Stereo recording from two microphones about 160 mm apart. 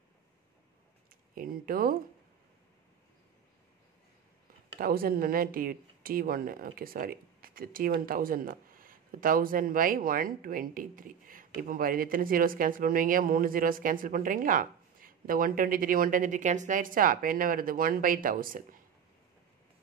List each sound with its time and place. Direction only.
1.3 s speech: 60° right (ahead or behind)
4.7 s speech: 70° right (ahead or behind)